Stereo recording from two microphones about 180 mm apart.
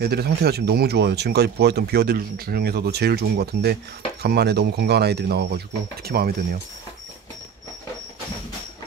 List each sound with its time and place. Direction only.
0.0 s speech: 60° right (ahead or behind)